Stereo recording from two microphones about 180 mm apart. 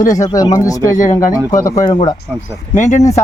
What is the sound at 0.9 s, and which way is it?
Speech, 45° left (ahead or behind).